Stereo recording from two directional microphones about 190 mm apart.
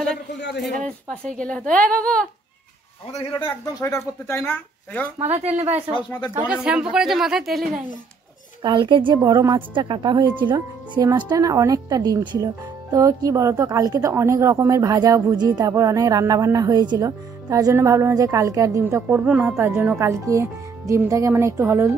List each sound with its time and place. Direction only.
0.8 s speech: 5° left (ahead or behind)
3.4 s speech: 15° left (ahead or behind)
5.2 s speech: 35° right (ahead or behind)
5.9 s speech: 5° left (ahead or behind)
6.3 s speech: 5° right (ahead or behind)
8.6 s a woman's voice: 25° right (ahead or behind)